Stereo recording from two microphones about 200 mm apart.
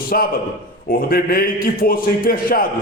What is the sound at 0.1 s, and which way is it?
A man's voice, 45° left (ahead or behind).